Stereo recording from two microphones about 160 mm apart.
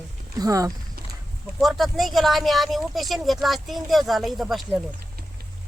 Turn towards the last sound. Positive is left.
turn(degrees=0)  # may be behind; listen again after turning